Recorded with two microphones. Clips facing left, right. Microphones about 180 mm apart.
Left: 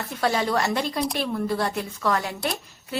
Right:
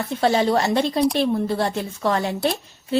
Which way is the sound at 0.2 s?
25° right (ahead or behind).